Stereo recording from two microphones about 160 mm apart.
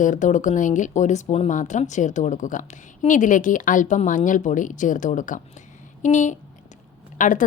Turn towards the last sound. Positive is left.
turn(degrees=55)  # may be behind; listen again after turning